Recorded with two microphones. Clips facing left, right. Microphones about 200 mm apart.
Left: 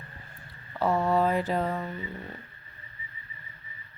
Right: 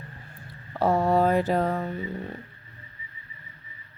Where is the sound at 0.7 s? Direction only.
45° right (ahead or behind).